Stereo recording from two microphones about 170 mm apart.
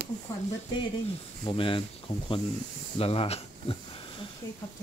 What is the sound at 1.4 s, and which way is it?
Rub, 30° left (ahead or behind).